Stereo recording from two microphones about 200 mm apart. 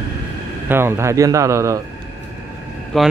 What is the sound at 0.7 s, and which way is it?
Speech, 10° right (ahead or behind).